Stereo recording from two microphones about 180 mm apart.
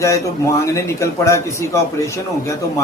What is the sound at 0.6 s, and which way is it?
A man's voice, 15° left (ahead or behind).